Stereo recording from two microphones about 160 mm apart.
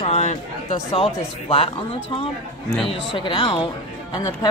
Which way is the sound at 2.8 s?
30° left (ahead or behind).